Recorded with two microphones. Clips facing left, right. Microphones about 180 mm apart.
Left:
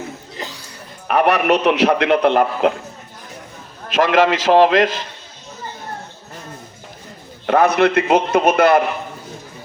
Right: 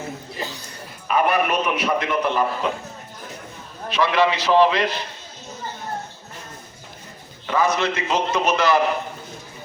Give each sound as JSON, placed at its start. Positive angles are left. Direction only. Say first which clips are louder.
{"t": 1.0, "sound": "a man's voice", "louder": "left 4 dB", "side_deg": 65}
{"t": 3.9, "sound": "a man's voice", "louder": "left 5 dB", "side_deg": 45}
{"t": 7.4, "sound": "a man's voice", "louder": "left 7 dB", "side_deg": 60}